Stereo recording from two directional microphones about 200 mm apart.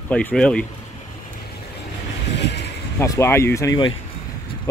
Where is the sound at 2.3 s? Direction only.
60° left (ahead or behind).